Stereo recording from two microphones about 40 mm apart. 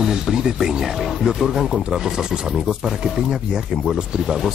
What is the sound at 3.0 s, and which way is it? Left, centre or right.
Speech, centre.